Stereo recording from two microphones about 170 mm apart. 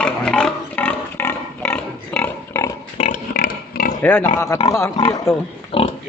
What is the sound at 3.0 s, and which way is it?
Pig, 50° left (ahead or behind).